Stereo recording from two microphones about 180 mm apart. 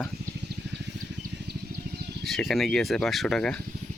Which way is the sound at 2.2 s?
Centre (ahead or behind).